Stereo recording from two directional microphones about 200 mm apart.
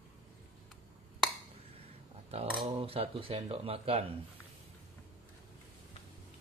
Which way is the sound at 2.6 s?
25° right (ahead or behind).